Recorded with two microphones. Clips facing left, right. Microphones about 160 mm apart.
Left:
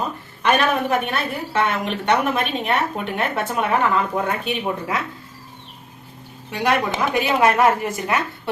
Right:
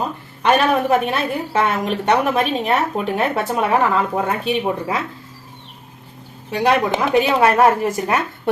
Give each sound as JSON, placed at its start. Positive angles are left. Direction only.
{"t": 0.4, "sound": "a woman's voice", "side_deg": -30}
{"t": 6.5, "sound": "a woman's voice", "side_deg": -30}